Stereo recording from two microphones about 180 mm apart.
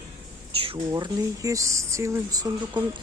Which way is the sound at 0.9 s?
20° right (ahead or behind).